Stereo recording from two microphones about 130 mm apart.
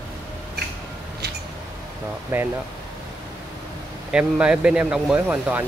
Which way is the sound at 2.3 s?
15° right (ahead or behind).